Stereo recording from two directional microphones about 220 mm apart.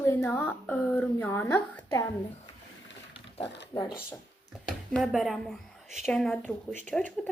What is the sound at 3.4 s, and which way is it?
Speech, 50° left (ahead or behind).